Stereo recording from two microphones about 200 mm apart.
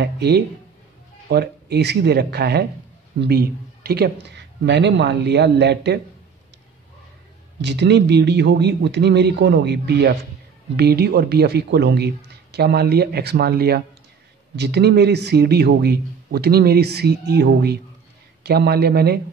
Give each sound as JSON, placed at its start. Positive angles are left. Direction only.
{"t": 0.0, "sound": "a man's voice", "side_deg": -55}
{"t": 7.6, "sound": "a man's voice", "side_deg": -60}